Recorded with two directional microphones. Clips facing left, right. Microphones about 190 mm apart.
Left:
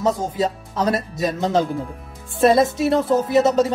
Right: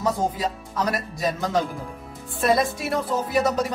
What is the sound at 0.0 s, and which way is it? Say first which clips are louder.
A man's voice: left 4 dB; 25° left (ahead or behind).